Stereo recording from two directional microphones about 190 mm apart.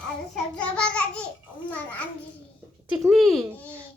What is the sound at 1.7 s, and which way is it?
Speech, 10° left (ahead or behind).